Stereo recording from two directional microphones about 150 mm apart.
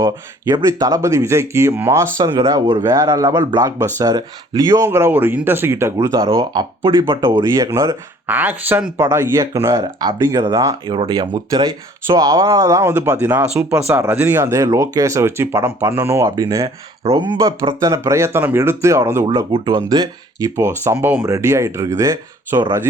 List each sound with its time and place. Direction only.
0.0 s speech: 20° right (ahead or behind)
2.1 s speech: 25° right (ahead or behind)
7.2 s speech: 15° right (ahead or behind)
10.9 s speech: 35° right (ahead or behind)
11.3 s speech: 25° right (ahead or behind)
19.3 s speech: 30° right (ahead or behind)